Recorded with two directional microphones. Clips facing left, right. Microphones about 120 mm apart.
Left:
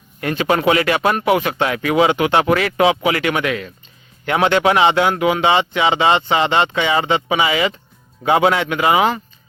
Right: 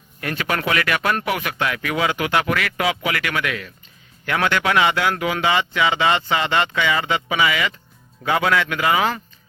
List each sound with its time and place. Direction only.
0.2 s speech: 25° left (ahead or behind)